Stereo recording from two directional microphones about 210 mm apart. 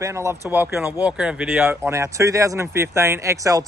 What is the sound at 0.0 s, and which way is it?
Speech, 15° right (ahead or behind).